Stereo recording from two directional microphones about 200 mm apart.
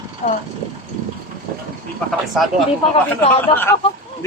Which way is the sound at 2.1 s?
Centre (ahead or behind).